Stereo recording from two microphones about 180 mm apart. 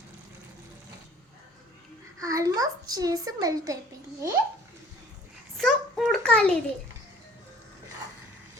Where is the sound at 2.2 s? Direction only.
15° right (ahead or behind).